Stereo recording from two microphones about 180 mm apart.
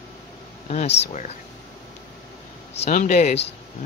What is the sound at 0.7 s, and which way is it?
Speech, 40° left (ahead or behind).